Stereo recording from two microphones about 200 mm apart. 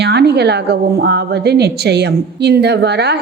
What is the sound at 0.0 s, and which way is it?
A woman's voice, 55° right (ahead or behind).